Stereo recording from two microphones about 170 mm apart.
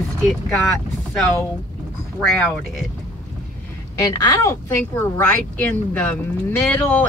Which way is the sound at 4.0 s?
20° left (ahead or behind).